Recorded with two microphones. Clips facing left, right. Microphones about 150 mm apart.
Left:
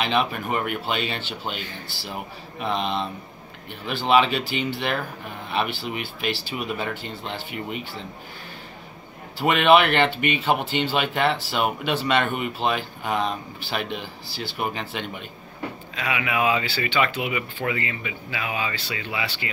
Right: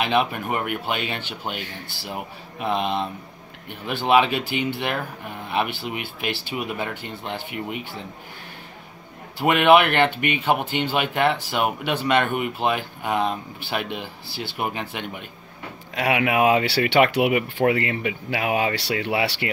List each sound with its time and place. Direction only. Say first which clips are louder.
0.0 s speech: right 2 dB; 15° right (ahead or behind)
9.4 s speech: right 1 dB; 10° right (ahead or behind)
15.9 s speech: right 7 dB; 65° right (ahead or behind)